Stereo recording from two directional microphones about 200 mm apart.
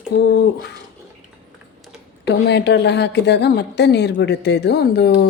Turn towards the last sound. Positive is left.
turn(degrees=55)  # may be behind; listen again after turning